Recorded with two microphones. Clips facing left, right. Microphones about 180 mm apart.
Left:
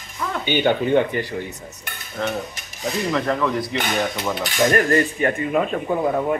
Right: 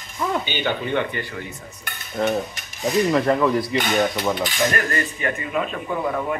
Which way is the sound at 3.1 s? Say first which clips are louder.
Right 1 dB; 15° right (ahead or behind).